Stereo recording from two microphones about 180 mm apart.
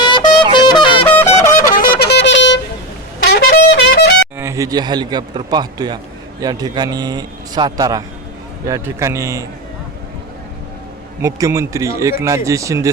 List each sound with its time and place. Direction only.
0.0 s music: 25° left (ahead or behind)
1.0 s music: 10° left (ahead or behind)
1.5 s a sound: 65° left (ahead or behind); by 2.6 s 85° left
3.2 s music: 65° left (ahead or behind)
4.4 s a man's voice: 15° right (ahead or behind)
11.2 s speech: 20° right (ahead or behind)